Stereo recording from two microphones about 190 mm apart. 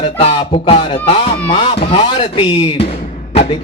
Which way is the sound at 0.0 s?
30° left (ahead or behind).